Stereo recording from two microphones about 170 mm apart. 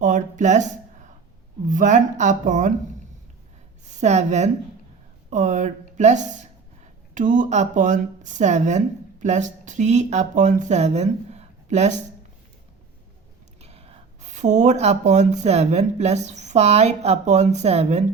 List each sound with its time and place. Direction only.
0.0 s speech: 45° right (ahead or behind)
3.8 s speech: 40° right (ahead or behind)
13.6 s speech: 35° right (ahead or behind)